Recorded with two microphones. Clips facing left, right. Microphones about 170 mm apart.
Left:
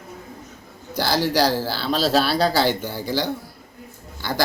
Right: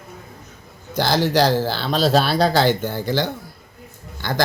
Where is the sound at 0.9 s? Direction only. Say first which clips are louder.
Right 3 dB; 10° left (ahead or behind).